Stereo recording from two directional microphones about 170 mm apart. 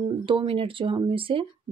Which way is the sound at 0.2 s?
30° right (ahead or behind).